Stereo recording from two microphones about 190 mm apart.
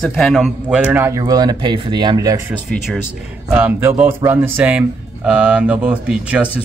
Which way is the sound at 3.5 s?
10° right (ahead or behind).